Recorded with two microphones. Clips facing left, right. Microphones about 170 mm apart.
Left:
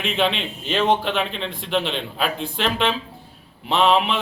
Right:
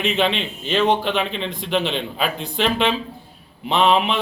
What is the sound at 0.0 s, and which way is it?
Speech, centre (ahead or behind).